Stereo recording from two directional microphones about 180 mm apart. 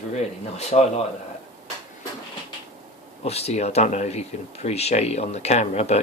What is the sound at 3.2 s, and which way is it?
Speech, 35° left (ahead or behind).